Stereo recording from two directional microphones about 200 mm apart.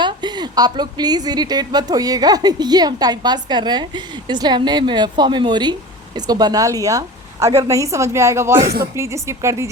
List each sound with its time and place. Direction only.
0.0 s a woman's voice: 20° right (ahead or behind)
8.6 s speech: 50° right (ahead or behind)
9.0 s a woman's voice: 15° right (ahead or behind)